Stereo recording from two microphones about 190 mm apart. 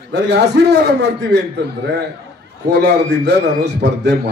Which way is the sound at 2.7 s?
60° right (ahead or behind).